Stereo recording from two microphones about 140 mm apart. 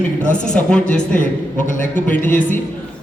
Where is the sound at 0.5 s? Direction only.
5° left (ahead or behind).